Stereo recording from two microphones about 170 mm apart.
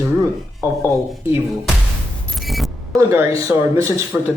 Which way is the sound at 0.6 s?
15° right (ahead or behind).